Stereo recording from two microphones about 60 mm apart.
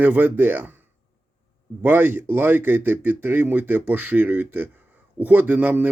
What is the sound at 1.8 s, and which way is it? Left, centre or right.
Speech, right.